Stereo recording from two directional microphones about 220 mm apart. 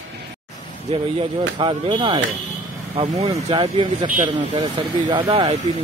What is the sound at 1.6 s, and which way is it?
Speech, 20° right (ahead or behind).